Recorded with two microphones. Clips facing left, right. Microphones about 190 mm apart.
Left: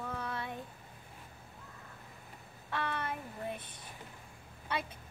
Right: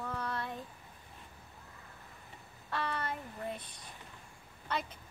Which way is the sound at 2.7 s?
5° left (ahead or behind).